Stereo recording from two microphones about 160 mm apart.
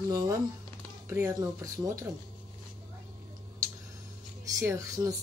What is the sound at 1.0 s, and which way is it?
Speech, 15° right (ahead or behind).